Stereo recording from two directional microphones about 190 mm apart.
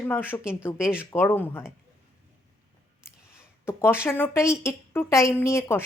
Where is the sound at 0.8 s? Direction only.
5° right (ahead or behind).